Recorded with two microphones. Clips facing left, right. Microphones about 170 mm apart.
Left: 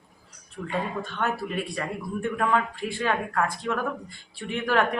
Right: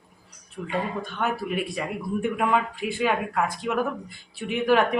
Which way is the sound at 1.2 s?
10° right (ahead or behind).